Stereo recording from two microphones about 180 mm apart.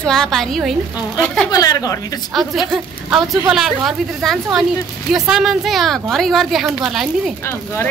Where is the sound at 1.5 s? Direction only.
20° left (ahead or behind).